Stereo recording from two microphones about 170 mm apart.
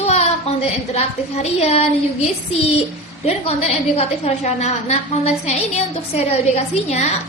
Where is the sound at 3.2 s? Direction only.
35° left (ahead or behind).